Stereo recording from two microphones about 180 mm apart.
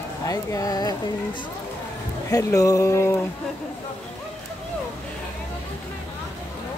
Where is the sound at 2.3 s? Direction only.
20° left (ahead or behind).